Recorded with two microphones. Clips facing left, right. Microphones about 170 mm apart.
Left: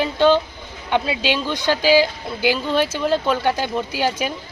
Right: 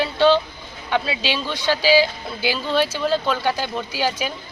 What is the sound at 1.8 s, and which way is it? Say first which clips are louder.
Speech: left 1 dB; 55° left (ahead or behind).